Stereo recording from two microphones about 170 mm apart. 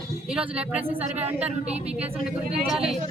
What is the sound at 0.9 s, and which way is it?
Speech, 40° right (ahead or behind).